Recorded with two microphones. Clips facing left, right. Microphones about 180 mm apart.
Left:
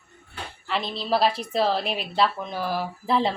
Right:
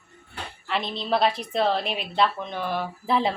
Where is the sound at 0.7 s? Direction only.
Centre (ahead or behind).